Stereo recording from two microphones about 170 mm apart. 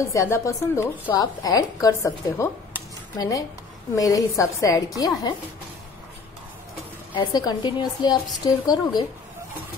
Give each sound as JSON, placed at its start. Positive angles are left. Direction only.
{"t": 0.1, "sound": "a woman's voice", "side_deg": 15}
{"t": 7.2, "sound": "a woman's voice", "side_deg": 25}